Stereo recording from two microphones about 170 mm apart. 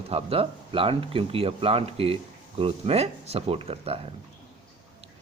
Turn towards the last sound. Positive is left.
turn(degrees=-35)  # may be behind; listen again after turning